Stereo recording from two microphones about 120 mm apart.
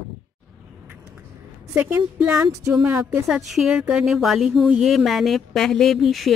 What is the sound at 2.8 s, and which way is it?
Speech, 20° right (ahead or behind).